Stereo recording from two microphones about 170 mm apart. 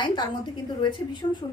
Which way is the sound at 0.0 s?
25° left (ahead or behind).